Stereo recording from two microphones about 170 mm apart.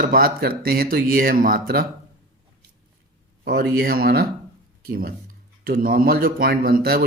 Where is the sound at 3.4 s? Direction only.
70° right (ahead or behind).